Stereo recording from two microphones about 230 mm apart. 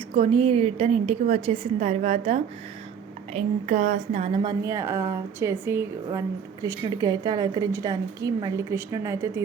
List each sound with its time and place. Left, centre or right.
0.2 s a woman's voice: right